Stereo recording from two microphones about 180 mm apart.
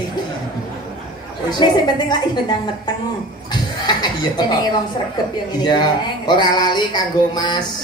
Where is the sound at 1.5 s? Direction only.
25° left (ahead or behind).